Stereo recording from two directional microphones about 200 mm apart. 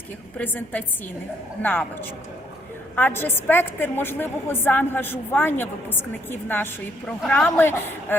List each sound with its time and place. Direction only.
0.3 s a woman's voice: 10° left (ahead or behind)